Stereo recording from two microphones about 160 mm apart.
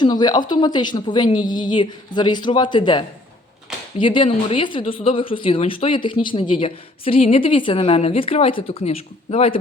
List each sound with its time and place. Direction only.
0.0 s a woman's voice: 25° left (ahead or behind)
3.7 s a sound: 5° right (ahead or behind)
4.0 s a woman's voice: 30° left (ahead or behind)